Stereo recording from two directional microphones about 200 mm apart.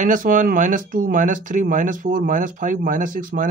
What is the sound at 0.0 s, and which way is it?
Speech, 40° right (ahead or behind).